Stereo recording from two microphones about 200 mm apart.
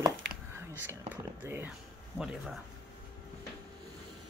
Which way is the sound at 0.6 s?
10° right (ahead or behind).